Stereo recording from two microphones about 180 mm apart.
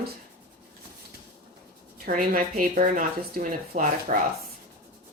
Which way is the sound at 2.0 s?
50° right (ahead or behind).